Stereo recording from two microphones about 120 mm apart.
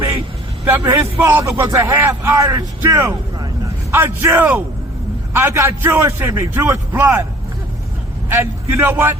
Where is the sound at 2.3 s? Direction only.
30° right (ahead or behind).